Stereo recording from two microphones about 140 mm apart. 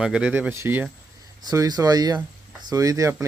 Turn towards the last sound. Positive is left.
turn(degrees=-25)  # may be behind; listen again after turning